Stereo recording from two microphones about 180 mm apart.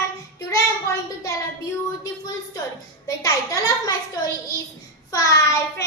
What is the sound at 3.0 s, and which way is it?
A child's voice, 20° left (ahead or behind).